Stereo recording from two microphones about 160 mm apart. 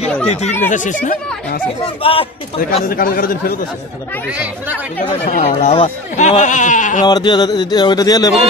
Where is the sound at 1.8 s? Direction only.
35° left (ahead or behind).